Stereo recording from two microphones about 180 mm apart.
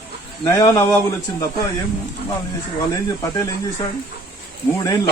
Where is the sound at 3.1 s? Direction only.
20° left (ahead or behind).